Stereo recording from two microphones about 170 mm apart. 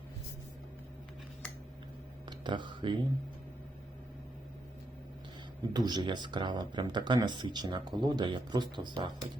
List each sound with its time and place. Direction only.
2.2 s speech: 25° right (ahead or behind)
5.7 s speech: 25° right (ahead or behind)